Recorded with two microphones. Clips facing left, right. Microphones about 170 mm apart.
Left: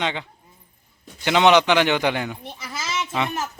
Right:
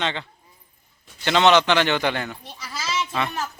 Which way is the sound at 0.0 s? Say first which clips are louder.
Left 1 dB; 10° left (ahead or behind).